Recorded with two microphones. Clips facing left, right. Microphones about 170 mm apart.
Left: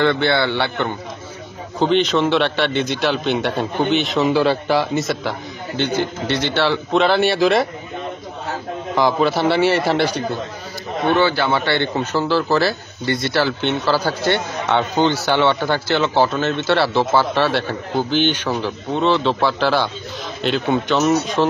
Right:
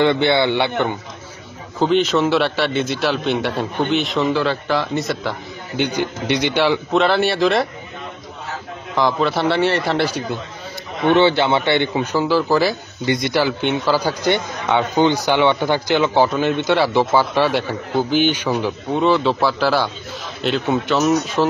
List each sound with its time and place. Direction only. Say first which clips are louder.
0.0 s a man's voice: right 2 dB; 20° right (ahead or behind)
1.8 s a man's voice: even; 5° right (ahead or behind)
4.3 s a man's voice: left 3 dB; 10° left (ahead or behind)
5.8 s a man's voice: even; 15° right (ahead or behind)
6.9 s a man's voice: left 1 dB; centre (ahead or behind)
8.9 s a man's voice: left 1 dB; 5° left (ahead or behind)
11.1 s a man's voice: right 3 dB; 25° right (ahead or behind); by 21.5 s centre (ahead or behind)